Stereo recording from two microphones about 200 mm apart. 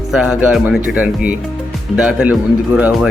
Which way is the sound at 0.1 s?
5° right (ahead or behind).